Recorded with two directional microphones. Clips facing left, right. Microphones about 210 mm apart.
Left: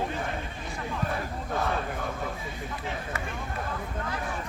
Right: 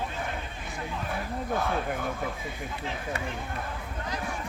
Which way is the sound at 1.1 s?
Centre (ahead or behind).